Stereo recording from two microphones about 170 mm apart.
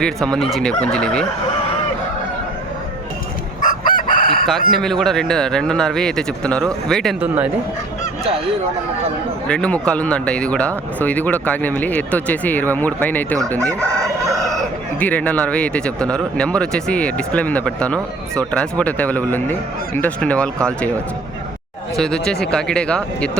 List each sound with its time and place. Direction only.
0.0 s a man's voice: 5° left (ahead or behind)
3.6 s chicken: 50° left (ahead or behind)
4.7 s a man's voice: centre (ahead or behind)
7.2 s speech: 10° right (ahead or behind)
9.5 s speech: 5° left (ahead or behind)
13.6 s chicken: 20° right (ahead or behind)
14.9 s speech: 10° left (ahead or behind)
21.9 s a man's voice: 5° left (ahead or behind)